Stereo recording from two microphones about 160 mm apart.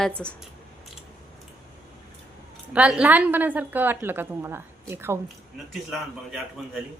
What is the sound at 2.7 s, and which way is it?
Speech, 5° right (ahead or behind).